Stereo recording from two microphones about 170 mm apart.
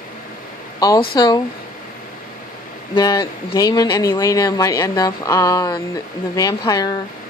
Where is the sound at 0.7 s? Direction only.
25° left (ahead or behind).